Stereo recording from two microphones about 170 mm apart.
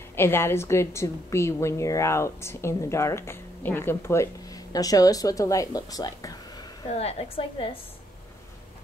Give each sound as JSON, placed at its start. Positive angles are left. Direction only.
{"t": 0.1, "sound": "speech", "side_deg": 15}
{"t": 6.9, "sound": "a woman's voice", "side_deg": 40}